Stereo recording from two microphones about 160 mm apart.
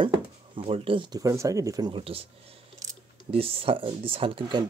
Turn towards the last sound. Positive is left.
turn(degrees=-30)  # may be behind; listen again after turning